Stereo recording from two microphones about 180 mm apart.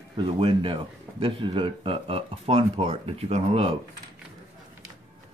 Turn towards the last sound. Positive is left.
turn(degrees=-30)  # may be behind; listen again after turning